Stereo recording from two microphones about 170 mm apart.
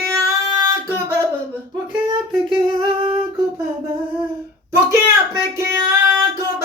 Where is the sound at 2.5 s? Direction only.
30° right (ahead or behind).